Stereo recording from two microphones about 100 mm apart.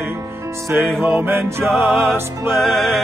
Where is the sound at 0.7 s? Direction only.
15° right (ahead or behind).